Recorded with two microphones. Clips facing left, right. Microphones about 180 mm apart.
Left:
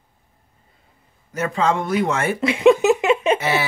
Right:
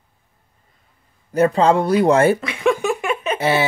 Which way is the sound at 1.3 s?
35° right (ahead or behind).